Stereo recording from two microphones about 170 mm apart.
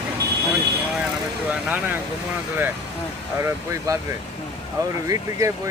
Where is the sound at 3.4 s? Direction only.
15° right (ahead or behind).